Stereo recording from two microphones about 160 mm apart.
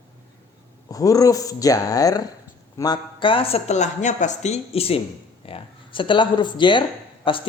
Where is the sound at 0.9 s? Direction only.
20° left (ahead or behind).